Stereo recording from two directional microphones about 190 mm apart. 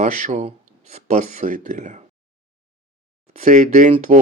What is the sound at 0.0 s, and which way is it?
Speech, 40° right (ahead or behind).